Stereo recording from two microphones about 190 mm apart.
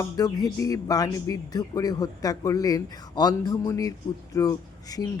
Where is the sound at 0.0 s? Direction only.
20° left (ahead or behind).